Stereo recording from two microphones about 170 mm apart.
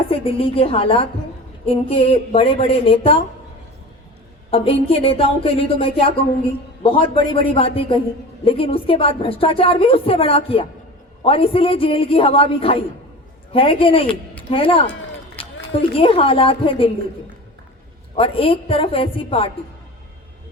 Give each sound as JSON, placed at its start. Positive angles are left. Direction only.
{"t": 0.1, "sound": "a woman's voice", "side_deg": 35}
{"t": 4.5, "sound": "a woman's voice", "side_deg": 35}
{"t": 16.0, "sound": "a woman's voice", "side_deg": 35}
{"t": 18.2, "sound": "a woman's voice", "side_deg": 30}